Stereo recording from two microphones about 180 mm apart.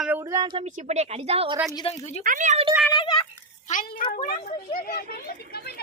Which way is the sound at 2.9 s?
25° left (ahead or behind).